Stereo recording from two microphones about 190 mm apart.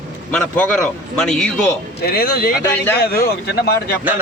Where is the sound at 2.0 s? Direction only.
55° left (ahead or behind).